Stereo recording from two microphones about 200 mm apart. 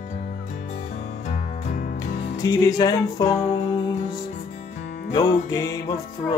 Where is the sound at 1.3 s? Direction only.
40° left (ahead or behind).